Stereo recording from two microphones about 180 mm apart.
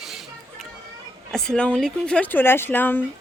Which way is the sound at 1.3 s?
5° left (ahead or behind).